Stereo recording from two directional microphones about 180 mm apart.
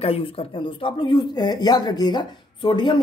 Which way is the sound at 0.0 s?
30° left (ahead or behind).